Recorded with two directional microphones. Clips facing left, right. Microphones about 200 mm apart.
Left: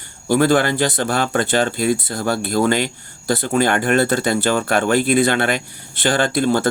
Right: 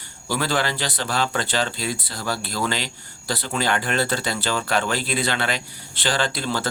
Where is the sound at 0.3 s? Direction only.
50° left (ahead or behind).